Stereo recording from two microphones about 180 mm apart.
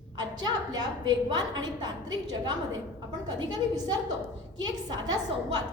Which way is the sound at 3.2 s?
25° right (ahead or behind).